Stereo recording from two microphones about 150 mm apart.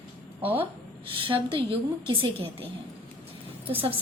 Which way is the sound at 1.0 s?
35° right (ahead or behind).